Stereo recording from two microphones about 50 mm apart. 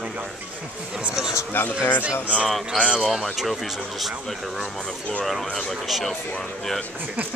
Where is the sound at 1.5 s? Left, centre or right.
Left.